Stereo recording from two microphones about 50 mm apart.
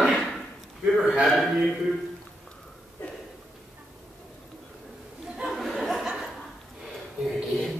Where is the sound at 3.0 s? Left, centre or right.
Left.